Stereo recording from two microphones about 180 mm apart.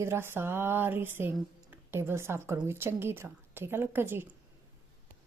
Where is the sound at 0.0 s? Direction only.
15° right (ahead or behind).